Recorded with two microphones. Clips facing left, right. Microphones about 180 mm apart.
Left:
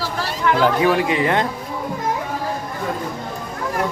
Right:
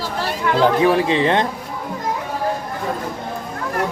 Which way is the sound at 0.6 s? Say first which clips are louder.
Right 3 dB; 30° right (ahead or behind).